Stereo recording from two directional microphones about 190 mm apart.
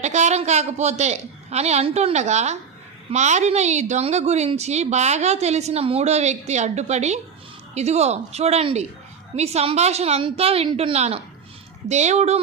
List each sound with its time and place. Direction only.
0.0 s a woman's voice: 35° right (ahead or behind)